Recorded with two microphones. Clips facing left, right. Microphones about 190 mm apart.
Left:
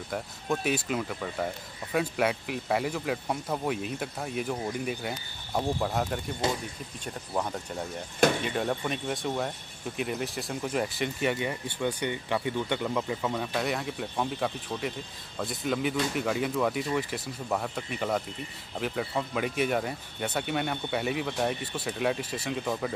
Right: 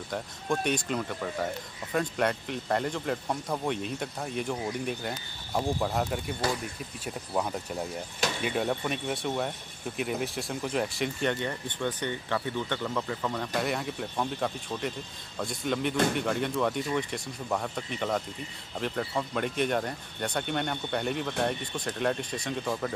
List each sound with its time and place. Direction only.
0.1 s speech: 5° left (ahead or behind)
6.4 s speech: 25° left (ahead or behind)
7.3 s speech: 5° right (ahead or behind)